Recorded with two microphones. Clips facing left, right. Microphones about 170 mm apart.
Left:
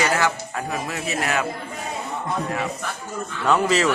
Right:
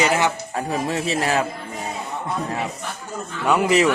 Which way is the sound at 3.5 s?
15° right (ahead or behind).